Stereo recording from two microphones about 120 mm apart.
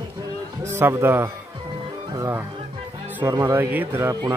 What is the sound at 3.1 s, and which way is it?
Music, 15° right (ahead or behind).